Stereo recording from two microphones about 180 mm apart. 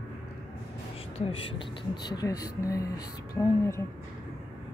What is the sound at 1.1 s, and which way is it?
Speech, 30° left (ahead or behind).